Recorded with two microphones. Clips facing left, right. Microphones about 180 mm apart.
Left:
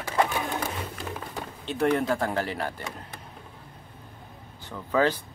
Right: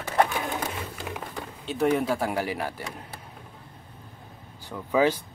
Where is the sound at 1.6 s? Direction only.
Centre (ahead or behind).